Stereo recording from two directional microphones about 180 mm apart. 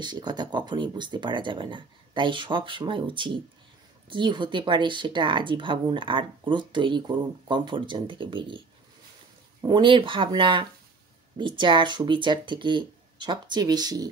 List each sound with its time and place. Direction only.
0.0 s speech: 25° right (ahead or behind)